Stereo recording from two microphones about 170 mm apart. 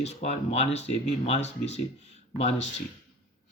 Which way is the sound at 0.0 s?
40° left (ahead or behind).